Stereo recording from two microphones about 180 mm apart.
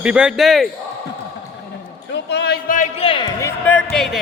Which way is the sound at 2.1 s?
70° left (ahead or behind).